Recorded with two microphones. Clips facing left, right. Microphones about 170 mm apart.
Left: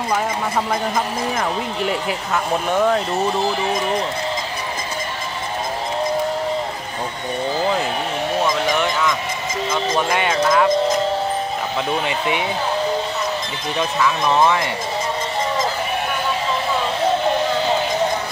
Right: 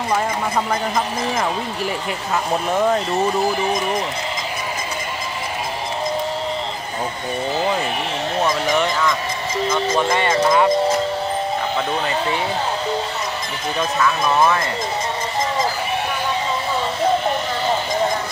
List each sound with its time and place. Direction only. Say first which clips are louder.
1.4 s speech: left 1 dB; centre (ahead or behind)
8.5 s speech: even; centre (ahead or behind)
10.3 s speech: right 1 dB; 5° right (ahead or behind)
12.1 s speech: even; 15° left (ahead or behind)
14.4 s speech: even; 15° left (ahead or behind)